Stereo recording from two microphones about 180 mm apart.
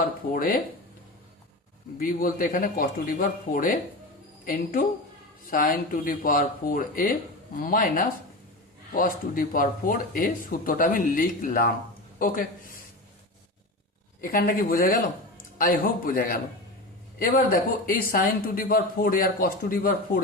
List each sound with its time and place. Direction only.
0.3 s speech: 50° left (ahead or behind)
2.0 s speech: 50° left (ahead or behind)
14.2 s speech: 50° left (ahead or behind)